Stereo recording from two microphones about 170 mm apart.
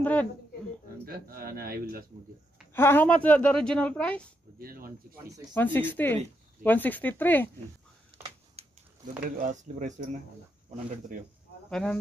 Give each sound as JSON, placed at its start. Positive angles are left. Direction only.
{"t": 0.0, "sound": "speech", "side_deg": 10}
{"t": 1.0, "sound": "speech", "side_deg": -60}
{"t": 2.7, "sound": "speech", "side_deg": 15}
{"t": 4.6, "sound": "speech", "side_deg": -60}
{"t": 5.5, "sound": "speech", "side_deg": 10}
{"t": 8.5, "sound": "speech", "side_deg": -50}
{"t": 11.7, "sound": "speech", "side_deg": 5}